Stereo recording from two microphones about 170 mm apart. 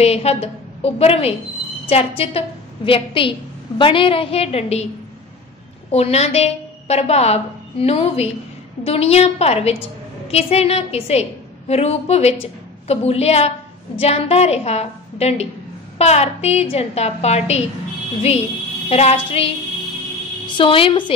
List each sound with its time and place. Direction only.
0.0 s a woman's voice: 35° left (ahead or behind)
5.9 s a woman's voice: 40° left (ahead or behind)
18.9 s a woman's voice: 35° left (ahead or behind)
20.5 s a woman's voice: 30° left (ahead or behind)